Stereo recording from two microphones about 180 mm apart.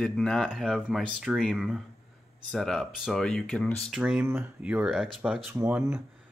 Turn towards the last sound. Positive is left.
turn(degrees=-10)  # may be behind; listen again after turning